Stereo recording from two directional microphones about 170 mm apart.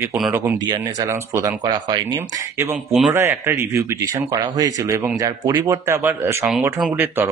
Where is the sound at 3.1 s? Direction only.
15° right (ahead or behind).